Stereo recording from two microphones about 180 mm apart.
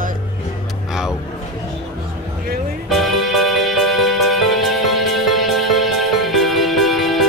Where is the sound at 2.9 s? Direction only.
Centre (ahead or behind).